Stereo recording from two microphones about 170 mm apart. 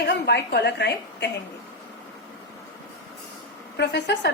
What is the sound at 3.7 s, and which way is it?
Speech, 85° left.